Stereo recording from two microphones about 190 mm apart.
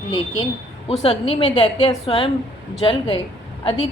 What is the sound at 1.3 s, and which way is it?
A woman's voice, 25° left (ahead or behind).